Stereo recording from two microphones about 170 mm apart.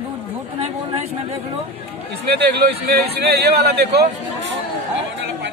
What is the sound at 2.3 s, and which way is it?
Speech, 70° right (ahead or behind).